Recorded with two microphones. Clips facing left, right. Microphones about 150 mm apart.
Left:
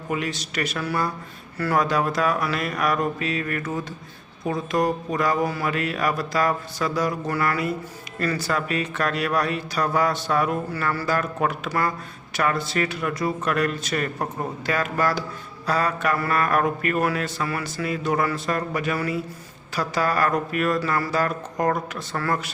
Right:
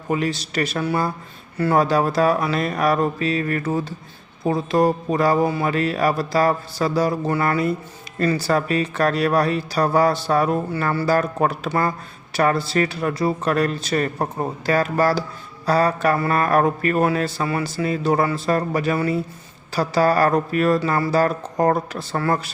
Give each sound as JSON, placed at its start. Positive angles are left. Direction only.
{"t": 0.1, "sound": "speech", "side_deg": -30}